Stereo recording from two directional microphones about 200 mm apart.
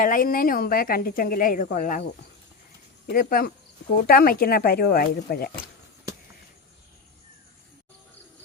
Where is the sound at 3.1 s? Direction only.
45° left (ahead or behind).